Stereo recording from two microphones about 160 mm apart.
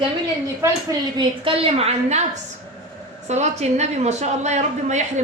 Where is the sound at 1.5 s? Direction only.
35° right (ahead or behind).